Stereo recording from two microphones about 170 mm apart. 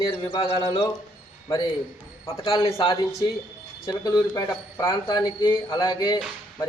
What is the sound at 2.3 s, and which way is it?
Speech, 20° left (ahead or behind).